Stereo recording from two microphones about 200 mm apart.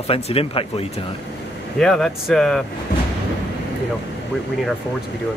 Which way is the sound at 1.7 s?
5° left (ahead or behind).